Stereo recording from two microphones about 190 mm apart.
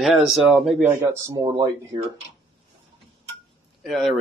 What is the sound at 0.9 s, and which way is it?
Speech, 15° right (ahead or behind).